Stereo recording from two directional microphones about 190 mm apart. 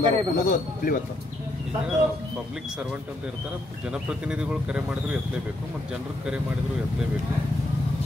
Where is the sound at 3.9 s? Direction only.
5° right (ahead or behind).